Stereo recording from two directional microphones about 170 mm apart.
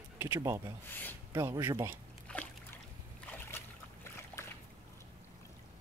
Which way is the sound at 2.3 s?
10° left (ahead or behind).